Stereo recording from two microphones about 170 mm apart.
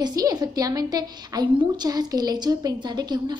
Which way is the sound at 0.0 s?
20° right (ahead or behind).